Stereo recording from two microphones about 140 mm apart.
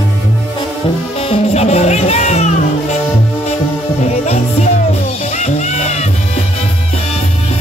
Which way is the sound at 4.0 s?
50° left (ahead or behind).